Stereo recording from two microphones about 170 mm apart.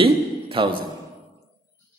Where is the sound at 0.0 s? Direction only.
30° right (ahead or behind).